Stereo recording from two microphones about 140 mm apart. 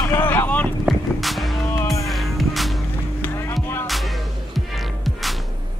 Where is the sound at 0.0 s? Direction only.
15° left (ahead or behind).